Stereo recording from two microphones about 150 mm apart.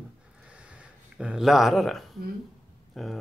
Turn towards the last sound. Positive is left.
turn(degrees=0)  # may be behind; listen again after turning